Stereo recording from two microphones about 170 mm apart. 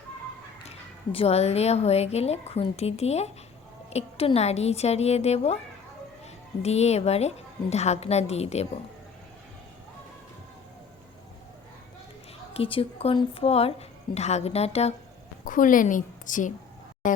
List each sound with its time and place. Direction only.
0.7 s speech: 35° left (ahead or behind)
6.6 s speech: 40° left (ahead or behind)
12.5 s speech: 35° left (ahead or behind)
15.4 s a woman's voice: 50° left (ahead or behind)